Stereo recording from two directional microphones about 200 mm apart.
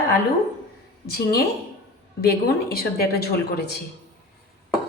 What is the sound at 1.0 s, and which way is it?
Speech, 50° left (ahead or behind).